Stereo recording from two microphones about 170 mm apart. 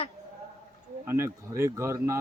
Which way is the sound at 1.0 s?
15° right (ahead or behind).